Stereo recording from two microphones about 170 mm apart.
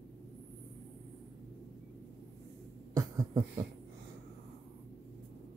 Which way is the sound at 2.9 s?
20° right (ahead or behind).